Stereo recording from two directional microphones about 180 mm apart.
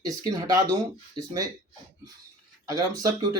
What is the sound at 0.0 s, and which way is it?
Speech, 20° right (ahead or behind).